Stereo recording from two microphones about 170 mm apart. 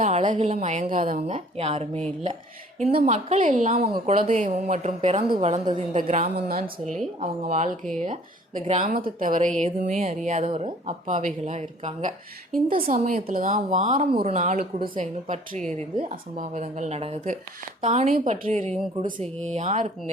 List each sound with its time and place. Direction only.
0.0 s a woman's voice: 45° right (ahead or behind)
8.9 s a woman's voice: 55° right (ahead or behind)
12.7 s a woman's voice: 55° right (ahead or behind)
14.1 s a woman's voice: 30° right (ahead or behind)
14.3 s a woman's voice: 55° right (ahead or behind)
15.0 s a woman's voice: 45° right (ahead or behind)
18.1 s a woman's voice: 55° right (ahead or behind)
19.2 s speech: 5° left (ahead or behind)
19.5 s a woman's voice: 45° right (ahead or behind)